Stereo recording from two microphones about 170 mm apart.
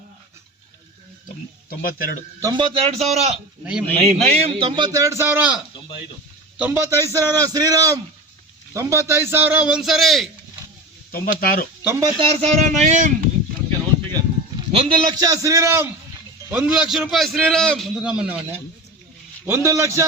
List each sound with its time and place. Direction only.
1.8 s speech: 60° left (ahead or behind)
2.4 s a man's voice: 25° right (ahead or behind)
3.6 s a man's voice: 5° right (ahead or behind)
3.9 s a man's voice: 40° right (ahead or behind)
4.6 s a man's voice: 25° right (ahead or behind); by 10.2 s centre (ahead or behind)
11.1 s speech: 60° left (ahead or behind)
11.8 s speech: 10° right (ahead or behind)
12.0 s a man's voice: 35° right (ahead or behind)
15.2 s a man's voice: 20° right (ahead or behind)